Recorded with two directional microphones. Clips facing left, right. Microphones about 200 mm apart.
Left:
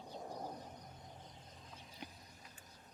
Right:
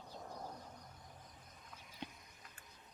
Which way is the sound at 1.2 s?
25° left (ahead or behind).